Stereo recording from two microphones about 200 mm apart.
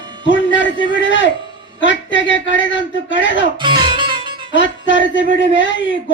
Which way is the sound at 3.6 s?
25° right (ahead or behind).